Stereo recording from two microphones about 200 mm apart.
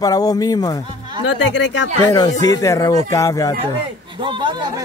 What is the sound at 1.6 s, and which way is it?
Speech, 65° left (ahead or behind).